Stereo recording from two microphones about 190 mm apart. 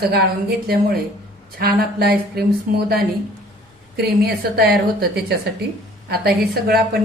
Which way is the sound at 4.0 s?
55° right (ahead or behind).